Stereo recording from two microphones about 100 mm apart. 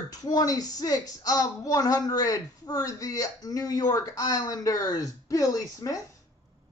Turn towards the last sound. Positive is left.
turn(degrees=35)  # may be behind; listen again after turning